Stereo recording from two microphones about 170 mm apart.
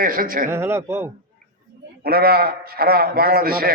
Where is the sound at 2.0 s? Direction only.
65° right (ahead or behind).